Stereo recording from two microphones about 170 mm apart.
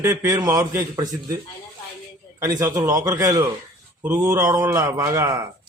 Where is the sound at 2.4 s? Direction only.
20° right (ahead or behind).